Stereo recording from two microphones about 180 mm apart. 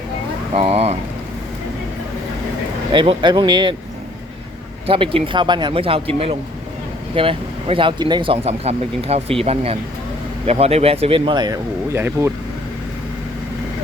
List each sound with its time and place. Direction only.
0.5 s speech: 35° right (ahead or behind)
2.9 s speech: 25° right (ahead or behind)
4.9 s speech: 30° right (ahead or behind); by 12.3 s 15° right (ahead or behind)